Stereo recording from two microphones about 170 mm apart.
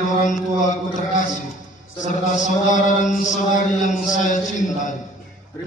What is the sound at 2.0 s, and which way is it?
A man's voice, 45° left (ahead or behind).